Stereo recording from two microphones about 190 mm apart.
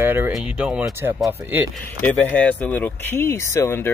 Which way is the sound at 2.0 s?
10° left (ahead or behind).